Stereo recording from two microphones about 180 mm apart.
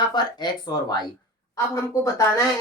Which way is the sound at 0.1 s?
25° left (ahead or behind).